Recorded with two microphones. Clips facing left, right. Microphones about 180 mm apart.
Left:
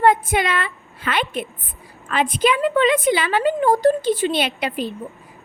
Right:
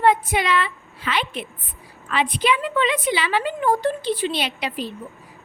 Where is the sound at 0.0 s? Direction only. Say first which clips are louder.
Left 2 dB; 50° left (ahead or behind).